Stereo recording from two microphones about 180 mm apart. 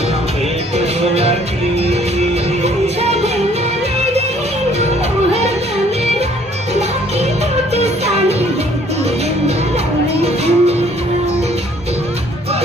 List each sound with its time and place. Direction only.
1.1 s music: 35° right (ahead or behind)
7.7 s music: 35° right (ahead or behind)
10.2 s music: 35° right (ahead or behind)